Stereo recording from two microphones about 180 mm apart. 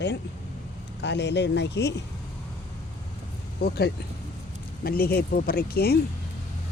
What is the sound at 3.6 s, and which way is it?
Speech, 65° left (ahead or behind).